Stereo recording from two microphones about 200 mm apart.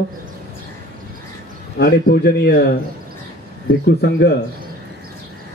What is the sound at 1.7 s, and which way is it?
Speech, 50° left (ahead or behind).